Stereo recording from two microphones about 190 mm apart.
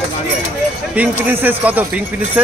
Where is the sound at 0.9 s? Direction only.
10° right (ahead or behind).